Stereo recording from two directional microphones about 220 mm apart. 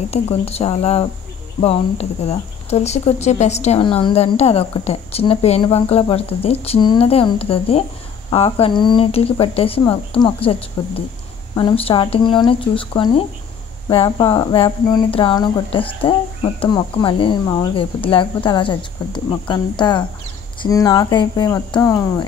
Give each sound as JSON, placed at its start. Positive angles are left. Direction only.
{"t": 0.1, "sound": "speech", "side_deg": 30}